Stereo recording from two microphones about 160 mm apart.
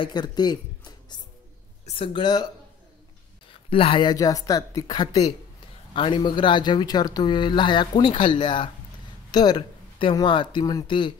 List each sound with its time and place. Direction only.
0.0 s speech: 25° left (ahead or behind)
3.7 s speech: 35° left (ahead or behind)
9.3 s a sound: 25° left (ahead or behind)
10.2 s speech: 30° left (ahead or behind)